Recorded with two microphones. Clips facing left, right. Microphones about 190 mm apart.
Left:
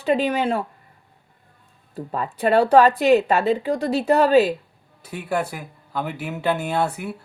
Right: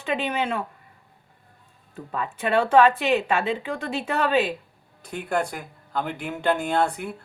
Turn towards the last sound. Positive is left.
turn(degrees=5)  # may be behind; listen again after turning